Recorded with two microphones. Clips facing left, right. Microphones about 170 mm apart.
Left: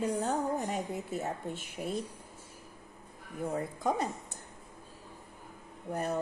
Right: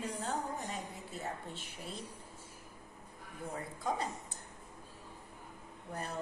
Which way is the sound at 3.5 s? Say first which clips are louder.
Left 6 dB; 50° left (ahead or behind).